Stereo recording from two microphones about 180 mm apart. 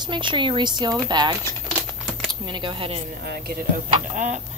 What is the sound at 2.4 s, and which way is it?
Speech, 25° right (ahead or behind).